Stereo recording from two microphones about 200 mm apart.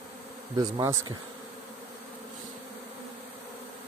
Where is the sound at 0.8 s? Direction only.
20° right (ahead or behind).